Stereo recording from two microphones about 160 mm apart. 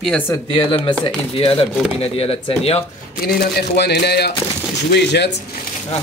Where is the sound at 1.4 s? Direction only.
35° left (ahead or behind).